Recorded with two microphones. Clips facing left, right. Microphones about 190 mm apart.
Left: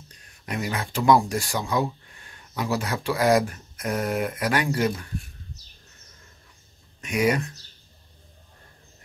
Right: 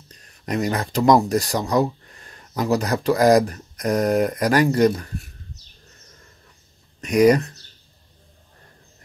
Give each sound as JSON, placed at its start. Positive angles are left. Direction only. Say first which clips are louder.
{"t": 0.5, "sound": "speech", "louder": "right 6 dB", "side_deg": -40}
{"t": 7.0, "sound": "speech", "louder": "right 8 dB", "side_deg": -40}